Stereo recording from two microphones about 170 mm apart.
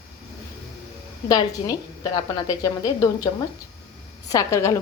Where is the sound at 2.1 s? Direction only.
25° left (ahead or behind).